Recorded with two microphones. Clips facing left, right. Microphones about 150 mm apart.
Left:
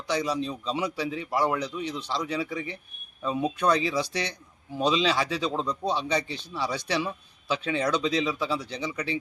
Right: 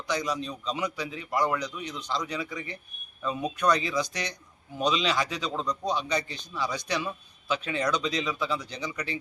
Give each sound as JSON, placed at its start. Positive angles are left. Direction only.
{"t": 0.1, "sound": "a man's voice", "side_deg": 25}